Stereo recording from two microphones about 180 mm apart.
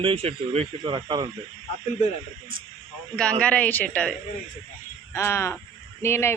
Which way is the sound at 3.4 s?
10° left (ahead or behind).